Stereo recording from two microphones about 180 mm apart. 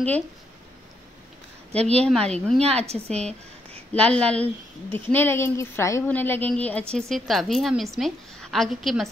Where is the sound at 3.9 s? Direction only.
5° left (ahead or behind).